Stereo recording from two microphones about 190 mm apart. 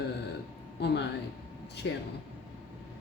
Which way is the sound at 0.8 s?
60° left (ahead or behind).